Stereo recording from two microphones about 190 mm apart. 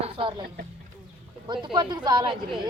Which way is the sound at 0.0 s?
25° right (ahead or behind).